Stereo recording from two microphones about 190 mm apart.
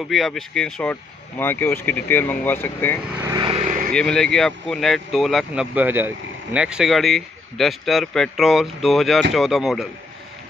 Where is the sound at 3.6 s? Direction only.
45° right (ahead or behind).